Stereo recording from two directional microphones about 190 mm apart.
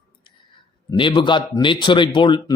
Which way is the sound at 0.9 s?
25° left (ahead or behind).